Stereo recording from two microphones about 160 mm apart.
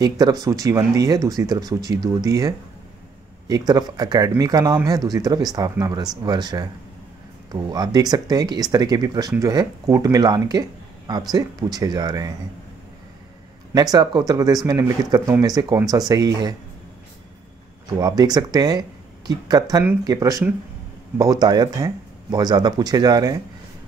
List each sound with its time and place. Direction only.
0.0 s speech: 25° right (ahead or behind)
7.7 s speech: 25° right (ahead or behind)
13.7 s speech: 25° right (ahead or behind)
17.9 s speech: 25° right (ahead or behind)